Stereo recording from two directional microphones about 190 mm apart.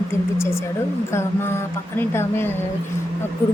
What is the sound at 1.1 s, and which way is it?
A woman's voice, 15° left (ahead or behind).